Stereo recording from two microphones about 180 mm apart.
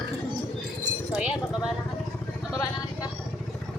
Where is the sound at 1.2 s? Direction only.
5° right (ahead or behind).